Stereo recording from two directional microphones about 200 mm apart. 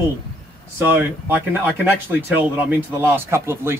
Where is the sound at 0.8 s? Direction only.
10° right (ahead or behind).